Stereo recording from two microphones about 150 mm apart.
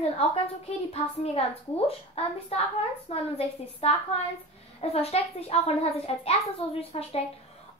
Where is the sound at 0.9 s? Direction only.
45° left (ahead or behind).